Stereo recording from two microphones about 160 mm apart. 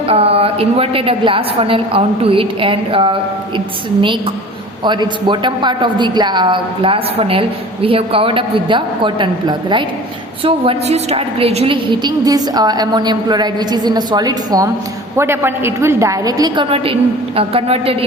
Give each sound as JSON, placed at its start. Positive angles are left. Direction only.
{"t": 0.1, "sound": "a woman's voice", "side_deg": -35}
{"t": 4.8, "sound": "a woman's voice", "side_deg": -30}
{"t": 16.6, "sound": "a woman's voice", "side_deg": -35}